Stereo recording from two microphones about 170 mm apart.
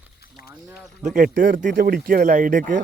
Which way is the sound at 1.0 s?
55° right (ahead or behind).